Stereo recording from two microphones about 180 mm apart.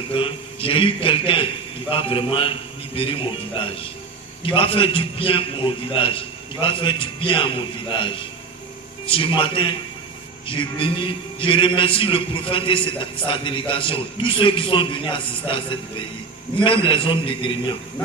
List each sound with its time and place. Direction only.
0.1 s a man's voice: 30° left (ahead or behind)
16.6 s a man's voice: 30° left (ahead or behind)